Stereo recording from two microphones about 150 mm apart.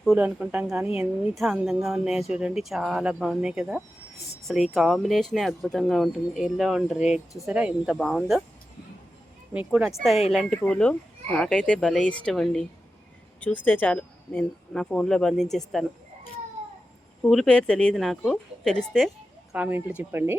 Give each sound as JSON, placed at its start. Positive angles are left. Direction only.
{"t": 0.0, "sound": "speech", "side_deg": -5}
{"t": 9.5, "sound": "speech", "side_deg": -10}
{"t": 17.2, "sound": "speech", "side_deg": 0}
{"t": 19.5, "sound": "speech", "side_deg": -10}